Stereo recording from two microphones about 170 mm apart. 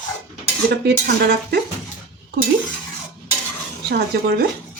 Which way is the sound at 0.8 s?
75° right (ahead or behind).